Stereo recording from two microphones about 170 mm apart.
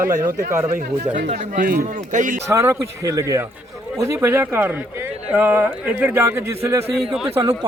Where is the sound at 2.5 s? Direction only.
15° right (ahead or behind).